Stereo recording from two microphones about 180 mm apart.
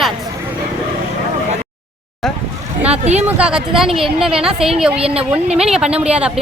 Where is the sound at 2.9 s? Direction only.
35° right (ahead or behind).